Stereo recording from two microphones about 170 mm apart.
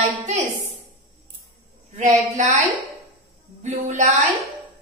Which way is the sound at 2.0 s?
45° right (ahead or behind).